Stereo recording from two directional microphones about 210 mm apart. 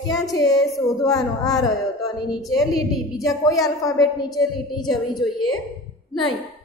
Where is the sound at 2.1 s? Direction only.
20° left (ahead or behind).